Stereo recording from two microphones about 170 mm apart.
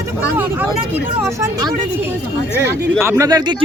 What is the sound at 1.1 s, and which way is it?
Speech, 15° right (ahead or behind).